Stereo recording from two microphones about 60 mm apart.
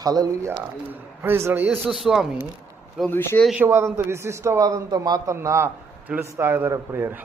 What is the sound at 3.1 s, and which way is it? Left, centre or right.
Speech, left.